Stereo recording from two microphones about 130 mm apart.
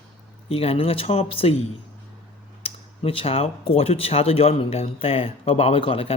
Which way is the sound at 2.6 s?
45° left (ahead or behind).